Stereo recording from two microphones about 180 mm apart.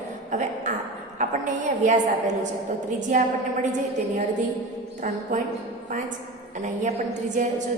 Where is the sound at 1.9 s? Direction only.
40° right (ahead or behind).